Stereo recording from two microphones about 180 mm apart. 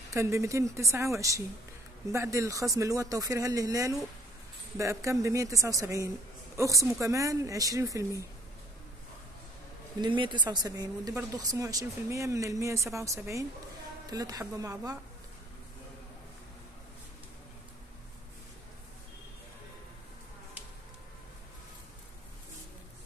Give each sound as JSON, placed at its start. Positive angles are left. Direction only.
{"t": 0.1, "sound": "speech", "side_deg": -15}
{"t": 10.0, "sound": "speech", "side_deg": -25}